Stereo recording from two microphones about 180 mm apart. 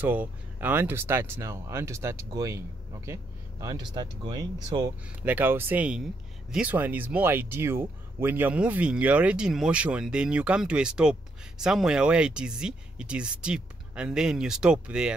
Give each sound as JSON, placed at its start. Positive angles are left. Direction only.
{"t": 0.0, "sound": "speech", "side_deg": -10}
{"t": 5.2, "sound": "speech", "side_deg": -10}